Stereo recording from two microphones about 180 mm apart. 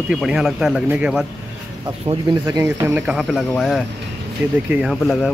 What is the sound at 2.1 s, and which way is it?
Speech, 20° right (ahead or behind).